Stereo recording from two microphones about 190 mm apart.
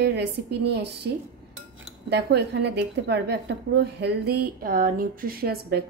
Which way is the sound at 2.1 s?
65° right (ahead or behind).